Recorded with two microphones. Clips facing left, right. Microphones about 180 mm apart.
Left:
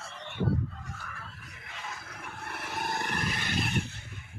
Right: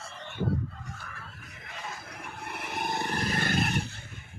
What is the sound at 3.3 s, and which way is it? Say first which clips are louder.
Roar: right 4 dB; 50° right (ahead or behind).